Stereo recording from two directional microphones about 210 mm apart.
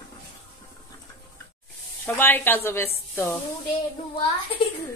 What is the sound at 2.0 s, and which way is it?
Speech, 10° left (ahead or behind).